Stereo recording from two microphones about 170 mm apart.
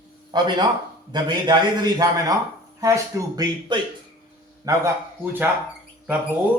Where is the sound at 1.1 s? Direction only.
25° right (ahead or behind).